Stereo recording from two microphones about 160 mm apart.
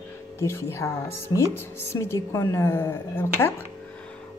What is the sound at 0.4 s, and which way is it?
A woman's voice, 15° left (ahead or behind).